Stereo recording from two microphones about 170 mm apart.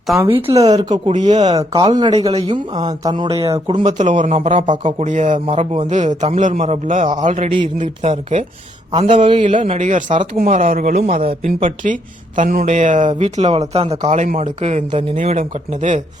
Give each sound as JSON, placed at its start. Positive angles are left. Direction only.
{"t": 0.3, "sound": "speech", "side_deg": -30}
{"t": 1.1, "sound": "speech", "side_deg": -40}
{"t": 1.5, "sound": "speech", "side_deg": -25}
{"t": 2.1, "sound": "speech", "side_deg": -35}
{"t": 3.0, "sound": "speech", "side_deg": -25}
{"t": 3.8, "sound": "speech", "side_deg": -45}
{"t": 4.4, "sound": "speech", "side_deg": -30}
{"t": 9.6, "sound": "speech", "side_deg": -45}